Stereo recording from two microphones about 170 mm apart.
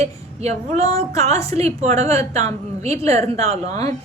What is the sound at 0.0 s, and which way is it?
Female singing, 40° right (ahead or behind).